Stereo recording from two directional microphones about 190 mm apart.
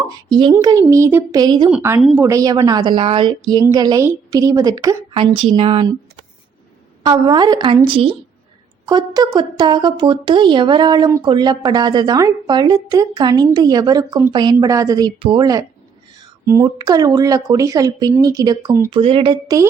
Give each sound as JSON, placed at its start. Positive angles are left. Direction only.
{"t": 0.3, "sound": "a woman's voice", "side_deg": -25}
{"t": 2.0, "sound": "speech", "side_deg": 0}
{"t": 2.2, "sound": "a woman's voice", "side_deg": -15}
{"t": 5.2, "sound": "a woman's voice", "side_deg": -30}
{"t": 7.0, "sound": "a woman's voice", "side_deg": -20}